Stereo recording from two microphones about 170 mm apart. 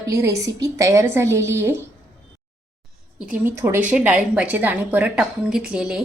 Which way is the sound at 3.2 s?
10° right (ahead or behind).